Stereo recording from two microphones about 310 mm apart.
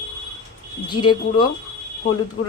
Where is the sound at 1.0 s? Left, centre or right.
Left.